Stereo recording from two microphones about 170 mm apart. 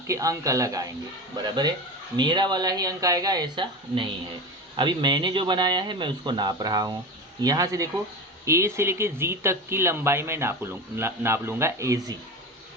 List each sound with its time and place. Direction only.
0.1 s speech: 20° right (ahead or behind)